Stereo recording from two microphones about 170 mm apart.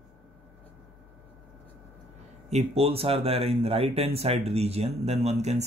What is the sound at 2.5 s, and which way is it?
Speech, 40° right (ahead or behind).